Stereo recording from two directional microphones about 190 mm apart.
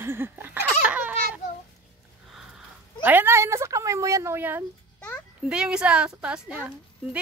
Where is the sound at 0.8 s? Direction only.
5° right (ahead or behind).